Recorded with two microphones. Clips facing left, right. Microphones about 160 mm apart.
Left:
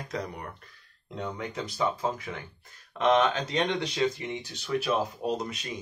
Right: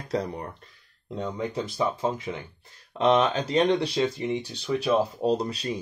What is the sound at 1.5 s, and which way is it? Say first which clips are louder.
Speech: right 2 dB; 25° right (ahead or behind).